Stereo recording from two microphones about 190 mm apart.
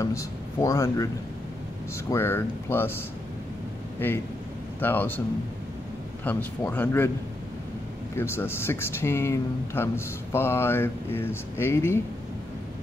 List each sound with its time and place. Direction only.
0.0 s speech: 15° left (ahead or behind)
4.0 s speech: 10° left (ahead or behind)
6.2 s speech: 10° left (ahead or behind)
8.2 s speech: 10° left (ahead or behind)